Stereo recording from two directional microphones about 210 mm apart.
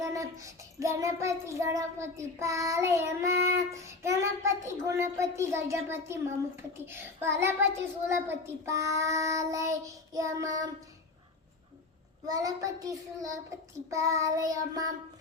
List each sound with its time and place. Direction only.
0.0 s child singing: 15° right (ahead or behind)
12.3 s child singing: 15° right (ahead or behind)